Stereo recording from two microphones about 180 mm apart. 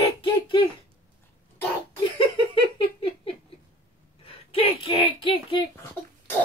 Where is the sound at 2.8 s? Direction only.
30° left (ahead or behind).